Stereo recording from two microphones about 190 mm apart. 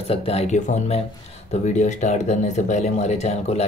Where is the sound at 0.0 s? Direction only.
30° left (ahead or behind).